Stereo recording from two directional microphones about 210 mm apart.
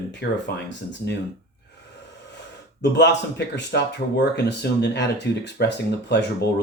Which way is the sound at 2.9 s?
55° left (ahead or behind).